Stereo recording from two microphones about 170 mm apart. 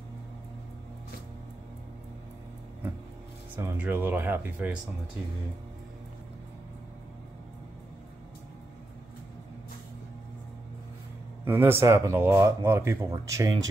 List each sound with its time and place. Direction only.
3.5 s speech: 10° right (ahead or behind)
11.4 s speech: 15° right (ahead or behind)